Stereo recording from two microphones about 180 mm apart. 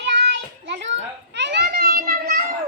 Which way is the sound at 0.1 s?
85° right.